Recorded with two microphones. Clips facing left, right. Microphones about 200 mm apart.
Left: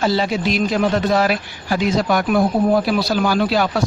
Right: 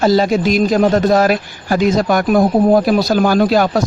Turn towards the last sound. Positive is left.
turn(degrees=-45)  # may be behind; listen again after turning